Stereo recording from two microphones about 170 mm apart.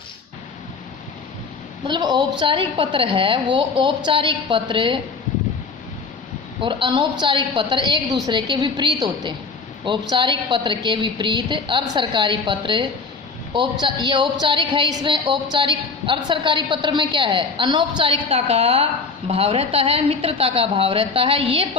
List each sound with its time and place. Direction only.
1.9 s a woman's voice: 25° right (ahead or behind)
6.6 s a woman's voice: 30° right (ahead or behind)